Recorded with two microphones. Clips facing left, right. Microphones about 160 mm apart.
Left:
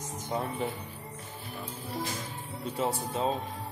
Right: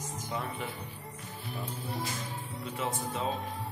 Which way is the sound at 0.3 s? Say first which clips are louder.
Left 5 dB; 35° left (ahead or behind).